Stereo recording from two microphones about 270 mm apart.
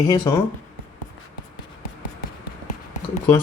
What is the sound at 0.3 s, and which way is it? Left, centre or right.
Speech, centre.